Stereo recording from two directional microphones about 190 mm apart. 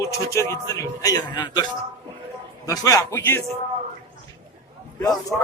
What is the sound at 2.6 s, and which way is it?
Speech, 15° left (ahead or behind).